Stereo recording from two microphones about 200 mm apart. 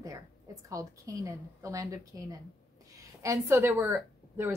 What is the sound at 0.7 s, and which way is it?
Speech, 15° right (ahead or behind).